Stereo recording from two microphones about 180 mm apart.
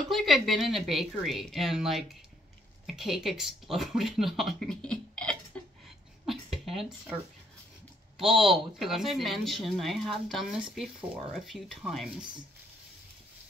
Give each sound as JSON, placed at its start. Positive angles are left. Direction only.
{"t": 0.1, "sound": "a woman's voice", "side_deg": 0}
{"t": 6.2, "sound": "a sound", "side_deg": 0}
{"t": 8.2, "sound": "a woman's voice", "side_deg": 0}